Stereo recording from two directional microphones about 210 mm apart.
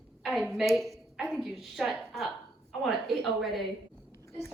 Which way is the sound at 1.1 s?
Centre (ahead or behind).